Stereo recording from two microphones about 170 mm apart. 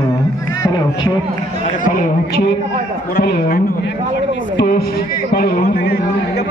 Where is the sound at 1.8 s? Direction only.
55° left (ahead or behind).